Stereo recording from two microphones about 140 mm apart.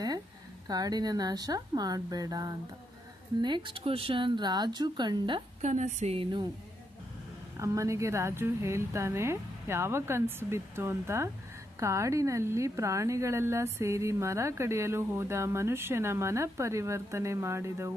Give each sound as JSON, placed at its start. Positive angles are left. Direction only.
{"t": 0.7, "sound": "speech", "side_deg": -25}
{"t": 5.6, "sound": "a woman's voice", "side_deg": -55}
{"t": 7.5, "sound": "speech", "side_deg": -20}